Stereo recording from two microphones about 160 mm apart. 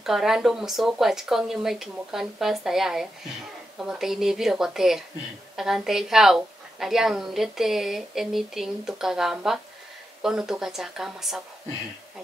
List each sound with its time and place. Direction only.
0.0 s a woman's voice: 5° right (ahead or behind)